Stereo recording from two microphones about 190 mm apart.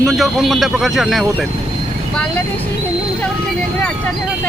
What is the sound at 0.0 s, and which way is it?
Speech, centre (ahead or behind).